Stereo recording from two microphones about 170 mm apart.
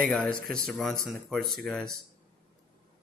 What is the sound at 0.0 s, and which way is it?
Speech, 5° left (ahead or behind).